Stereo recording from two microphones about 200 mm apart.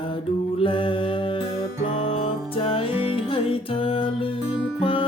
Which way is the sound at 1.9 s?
30° left (ahead or behind).